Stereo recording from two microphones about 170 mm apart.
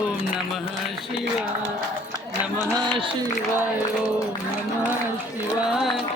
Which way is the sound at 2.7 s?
25° right (ahead or behind).